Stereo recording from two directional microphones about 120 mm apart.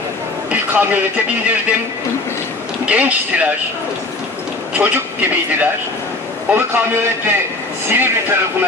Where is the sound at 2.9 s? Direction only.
10° right (ahead or behind).